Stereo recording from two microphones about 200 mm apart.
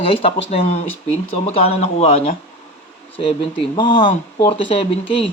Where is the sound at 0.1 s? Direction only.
30° left (ahead or behind).